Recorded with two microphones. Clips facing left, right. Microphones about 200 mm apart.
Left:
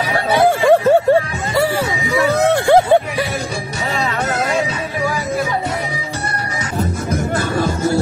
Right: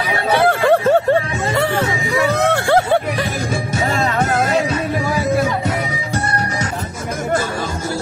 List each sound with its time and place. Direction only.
0.3 s a sound: 10° left (ahead or behind)
1.6 s music: 10° left (ahead or behind)
3.9 s music: 45° right (ahead or behind)